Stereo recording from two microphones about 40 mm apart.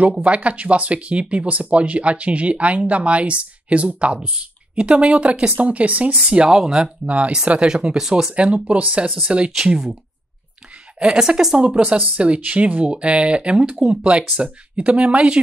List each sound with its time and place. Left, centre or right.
0.2 s speech: right
5.6 s speech: right
6.5 s a woman's voice: centre
7.1 s speech: right
7.7 s speech: centre; by 9.1 s right
11.0 s a woman's voice: centre